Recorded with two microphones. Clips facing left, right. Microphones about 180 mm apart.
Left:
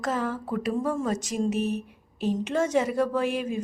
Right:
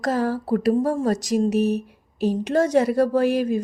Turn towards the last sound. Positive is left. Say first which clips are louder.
# right 7 dB
turn(degrees=-40)  # may be behind; listen again after turning